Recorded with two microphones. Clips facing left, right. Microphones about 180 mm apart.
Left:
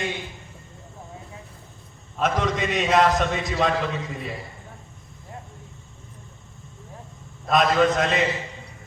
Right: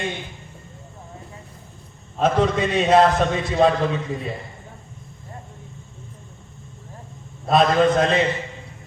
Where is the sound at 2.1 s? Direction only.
30° right (ahead or behind).